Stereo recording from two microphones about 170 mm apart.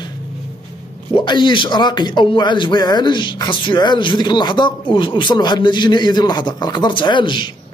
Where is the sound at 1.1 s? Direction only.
25° left (ahead or behind).